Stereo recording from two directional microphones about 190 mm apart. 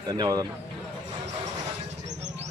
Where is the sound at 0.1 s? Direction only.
20° right (ahead or behind).